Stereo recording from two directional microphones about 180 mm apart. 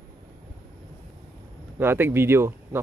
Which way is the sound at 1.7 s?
10° right (ahead or behind).